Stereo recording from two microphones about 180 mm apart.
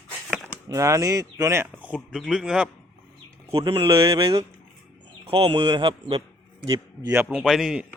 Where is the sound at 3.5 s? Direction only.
30° right (ahead or behind).